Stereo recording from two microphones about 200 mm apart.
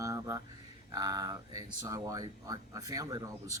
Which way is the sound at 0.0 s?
15° right (ahead or behind).